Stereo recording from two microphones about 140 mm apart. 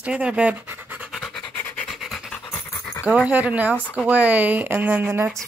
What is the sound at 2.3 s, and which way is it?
Dog, 15° left (ahead or behind).